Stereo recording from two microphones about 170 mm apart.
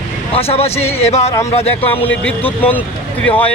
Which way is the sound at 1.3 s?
20° left (ahead or behind).